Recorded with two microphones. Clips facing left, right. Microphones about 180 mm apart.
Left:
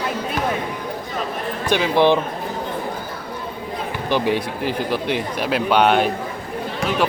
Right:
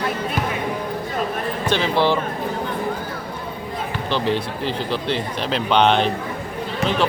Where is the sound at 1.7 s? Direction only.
15° left (ahead or behind).